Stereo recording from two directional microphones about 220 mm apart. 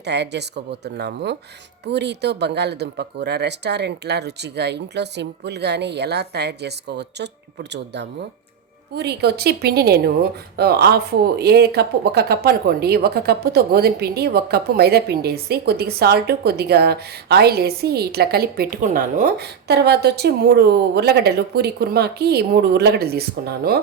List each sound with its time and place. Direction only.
0.0 s speech: 50° right (ahead or behind)